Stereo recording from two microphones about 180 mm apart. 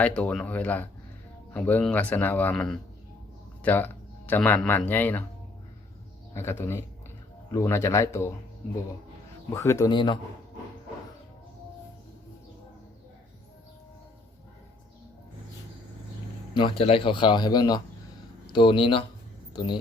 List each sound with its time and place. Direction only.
0.0 s speech: 5° left (ahead or behind)
6.3 s speech: 15° left (ahead or behind)
9.5 s speech: 15° left (ahead or behind)
16.6 s a man's voice: 30° left (ahead or behind)